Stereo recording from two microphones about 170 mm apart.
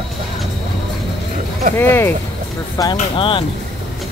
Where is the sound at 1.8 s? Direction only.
10° left (ahead or behind).